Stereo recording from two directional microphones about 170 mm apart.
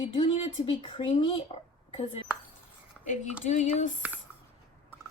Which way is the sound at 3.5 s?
45° left (ahead or behind).